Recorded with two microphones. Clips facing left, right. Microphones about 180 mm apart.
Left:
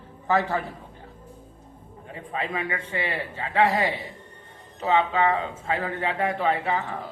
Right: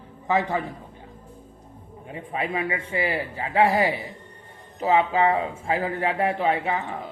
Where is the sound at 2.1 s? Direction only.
30° right (ahead or behind).